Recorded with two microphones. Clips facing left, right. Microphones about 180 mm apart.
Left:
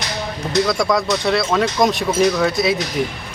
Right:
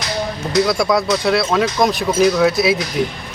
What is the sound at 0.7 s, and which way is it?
A man's voice, centre (ahead or behind).